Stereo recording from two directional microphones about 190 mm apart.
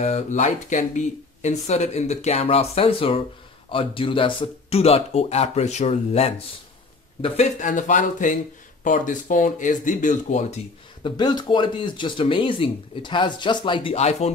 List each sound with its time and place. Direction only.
0.0 s speech: 35° left (ahead or behind)
11.0 s speech: 25° left (ahead or behind)